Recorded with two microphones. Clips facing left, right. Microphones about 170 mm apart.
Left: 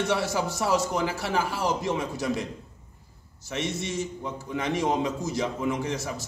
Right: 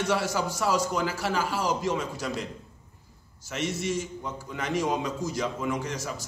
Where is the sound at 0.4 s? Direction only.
20° left (ahead or behind).